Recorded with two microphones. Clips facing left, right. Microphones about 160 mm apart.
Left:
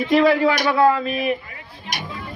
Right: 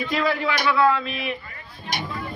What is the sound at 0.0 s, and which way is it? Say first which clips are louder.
Speech: left 8 dB; 60° left (ahead or behind).